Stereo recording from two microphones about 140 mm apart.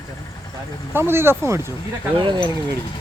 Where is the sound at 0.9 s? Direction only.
15° right (ahead or behind).